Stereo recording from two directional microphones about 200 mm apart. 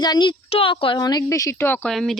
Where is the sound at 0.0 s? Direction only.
20° left (ahead or behind).